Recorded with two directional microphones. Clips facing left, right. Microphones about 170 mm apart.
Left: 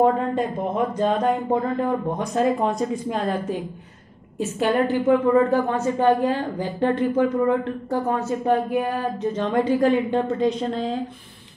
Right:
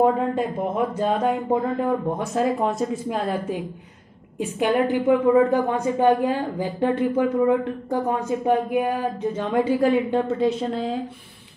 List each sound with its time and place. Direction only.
0.0 s a woman's voice: 5° right (ahead or behind)